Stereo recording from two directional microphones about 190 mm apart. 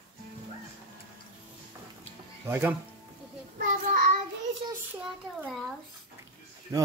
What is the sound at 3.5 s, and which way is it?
Child singing, 45° right (ahead or behind).